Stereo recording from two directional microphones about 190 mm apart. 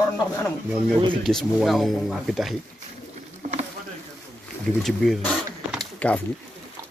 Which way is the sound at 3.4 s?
40° right (ahead or behind).